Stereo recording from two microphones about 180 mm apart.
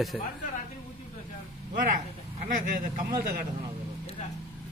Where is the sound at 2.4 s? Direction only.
45° right (ahead or behind).